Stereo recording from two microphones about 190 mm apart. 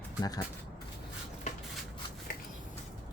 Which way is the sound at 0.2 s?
20° left (ahead or behind).